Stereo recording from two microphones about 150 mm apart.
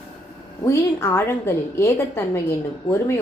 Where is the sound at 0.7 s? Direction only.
15° left (ahead or behind).